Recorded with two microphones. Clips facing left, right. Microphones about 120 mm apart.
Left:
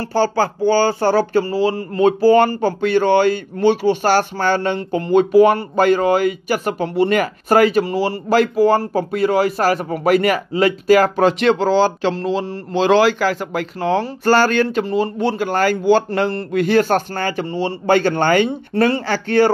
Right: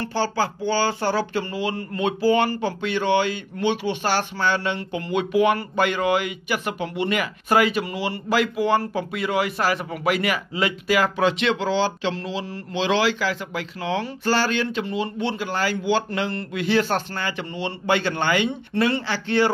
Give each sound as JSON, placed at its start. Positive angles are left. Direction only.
{"t": 0.0, "sound": "speech", "side_deg": 45}